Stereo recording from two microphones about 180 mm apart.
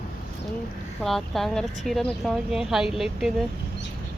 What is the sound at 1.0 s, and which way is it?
A woman's voice, centre (ahead or behind).